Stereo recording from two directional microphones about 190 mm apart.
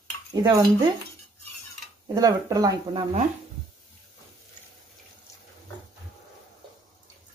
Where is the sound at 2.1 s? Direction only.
20° right (ahead or behind).